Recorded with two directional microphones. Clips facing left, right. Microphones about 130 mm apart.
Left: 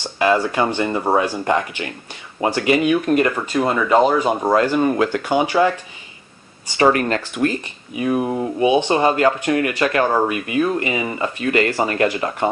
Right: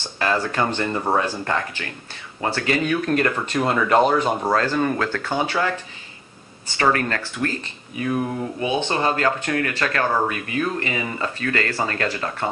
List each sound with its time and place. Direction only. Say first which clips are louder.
0.0 s speech: left 6 dB; 15° left (ahead or behind)
6.8 s speech: left 5 dB; 20° left (ahead or behind)